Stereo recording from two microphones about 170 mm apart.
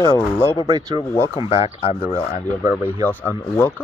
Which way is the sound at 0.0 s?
15° left (ahead or behind).